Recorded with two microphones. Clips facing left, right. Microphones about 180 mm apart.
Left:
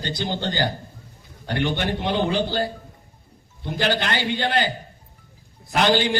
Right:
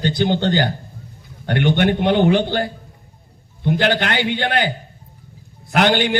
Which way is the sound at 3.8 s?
65° right (ahead or behind).